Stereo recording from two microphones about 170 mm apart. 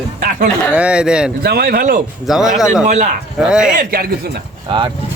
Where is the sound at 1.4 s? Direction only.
65° right (ahead or behind).